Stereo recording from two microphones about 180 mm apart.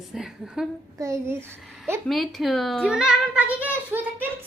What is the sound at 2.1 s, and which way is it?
A child's voice, centre (ahead or behind).